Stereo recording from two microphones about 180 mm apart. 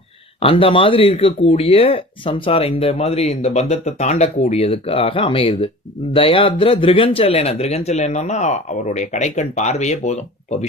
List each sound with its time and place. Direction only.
0.3 s speech: 30° left (ahead or behind)